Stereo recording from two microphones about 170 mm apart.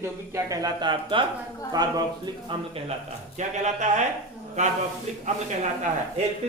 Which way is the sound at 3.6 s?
45° right (ahead or behind).